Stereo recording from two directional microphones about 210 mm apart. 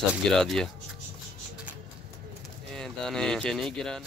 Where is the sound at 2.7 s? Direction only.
Centre (ahead or behind).